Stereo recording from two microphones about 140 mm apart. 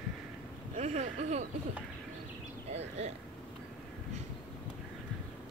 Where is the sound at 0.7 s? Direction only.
55° right (ahead or behind).